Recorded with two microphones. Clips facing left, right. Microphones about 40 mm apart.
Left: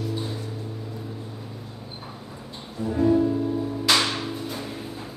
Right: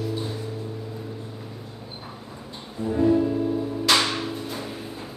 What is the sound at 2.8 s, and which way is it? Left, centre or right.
Music, centre.